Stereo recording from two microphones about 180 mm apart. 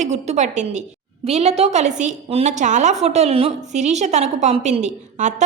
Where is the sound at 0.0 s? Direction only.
40° right (ahead or behind).